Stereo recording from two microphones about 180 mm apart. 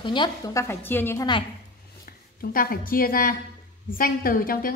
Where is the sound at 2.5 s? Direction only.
55° left (ahead or behind).